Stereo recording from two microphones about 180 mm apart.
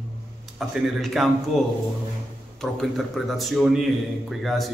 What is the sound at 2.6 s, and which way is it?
Speech, centre (ahead or behind).